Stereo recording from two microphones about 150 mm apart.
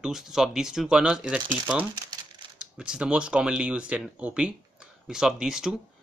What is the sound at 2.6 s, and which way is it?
Speech, 5° right (ahead or behind).